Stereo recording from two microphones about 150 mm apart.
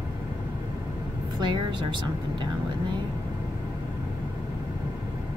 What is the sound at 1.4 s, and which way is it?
Speech, 30° right (ahead or behind).